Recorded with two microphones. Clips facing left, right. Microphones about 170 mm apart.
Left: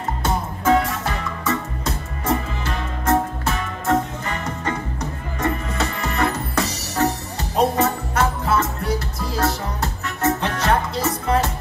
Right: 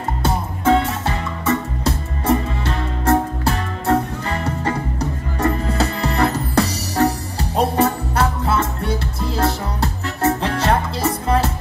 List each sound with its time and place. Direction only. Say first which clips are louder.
0.2 s music: right 3 dB; 30° right (ahead or behind)